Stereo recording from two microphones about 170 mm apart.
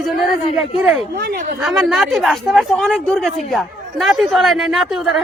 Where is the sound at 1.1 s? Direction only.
60° right (ahead or behind).